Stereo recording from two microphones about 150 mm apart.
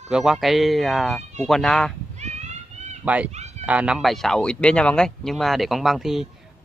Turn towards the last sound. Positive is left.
turn(degrees=0)  # may be behind; listen again after turning